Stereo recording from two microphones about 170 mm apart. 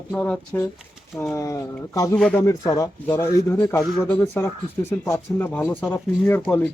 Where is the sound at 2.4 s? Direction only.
20° left (ahead or behind).